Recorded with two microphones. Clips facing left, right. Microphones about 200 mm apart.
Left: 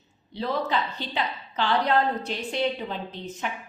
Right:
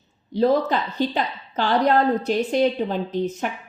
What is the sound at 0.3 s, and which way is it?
A woman's voice, 45° right (ahead or behind).